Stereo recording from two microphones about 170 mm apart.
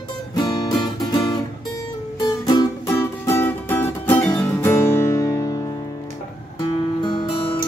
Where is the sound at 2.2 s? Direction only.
25° left (ahead or behind).